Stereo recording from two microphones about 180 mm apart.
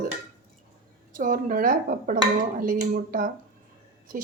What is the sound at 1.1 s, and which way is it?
A woman's voice, 50° right (ahead or behind).